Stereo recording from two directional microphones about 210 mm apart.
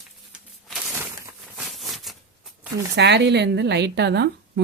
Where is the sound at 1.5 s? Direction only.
Centre (ahead or behind).